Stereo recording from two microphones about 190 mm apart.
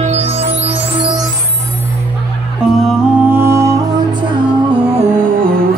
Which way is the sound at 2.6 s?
5° right (ahead or behind).